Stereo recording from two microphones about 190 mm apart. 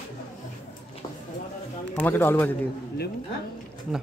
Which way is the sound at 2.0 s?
10° left (ahead or behind).